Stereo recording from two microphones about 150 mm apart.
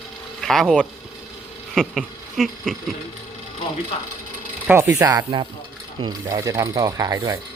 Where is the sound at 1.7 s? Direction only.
Centre (ahead or behind).